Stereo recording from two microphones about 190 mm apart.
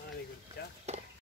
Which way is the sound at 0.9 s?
35° right (ahead or behind).